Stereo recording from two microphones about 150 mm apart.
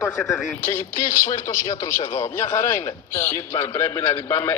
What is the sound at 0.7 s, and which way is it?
Speech, 20° left (ahead or behind).